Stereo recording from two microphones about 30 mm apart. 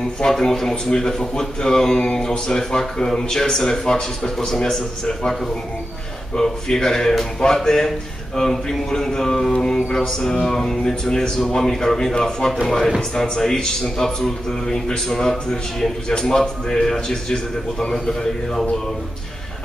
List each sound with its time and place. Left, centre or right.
0.3 s a man's voice: centre
12.6 s a man's voice: centre